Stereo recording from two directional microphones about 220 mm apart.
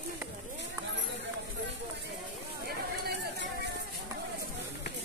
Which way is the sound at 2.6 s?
50° right (ahead or behind).